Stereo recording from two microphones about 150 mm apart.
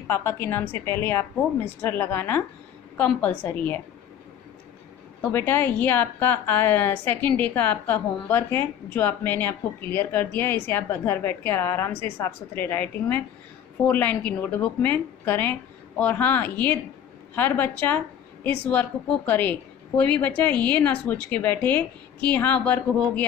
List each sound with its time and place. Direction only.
0.0 s a woman's voice: 15° left (ahead or behind)
5.2 s a woman's voice: 15° left (ahead or behind)